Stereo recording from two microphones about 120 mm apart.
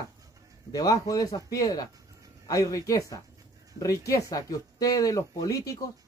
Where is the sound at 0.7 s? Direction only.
30° left (ahead or behind).